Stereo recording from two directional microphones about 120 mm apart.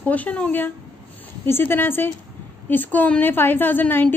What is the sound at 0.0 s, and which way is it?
A woman's voice, 10° left (ahead or behind).